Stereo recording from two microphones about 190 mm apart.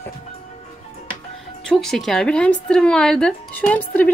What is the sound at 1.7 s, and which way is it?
Speech, 5° left (ahead or behind).